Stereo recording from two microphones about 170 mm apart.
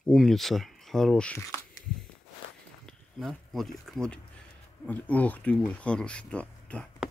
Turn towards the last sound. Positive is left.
turn(degrees=5)  # may be behind; listen again after turning